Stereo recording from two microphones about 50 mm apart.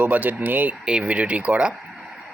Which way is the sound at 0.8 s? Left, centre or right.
Centre.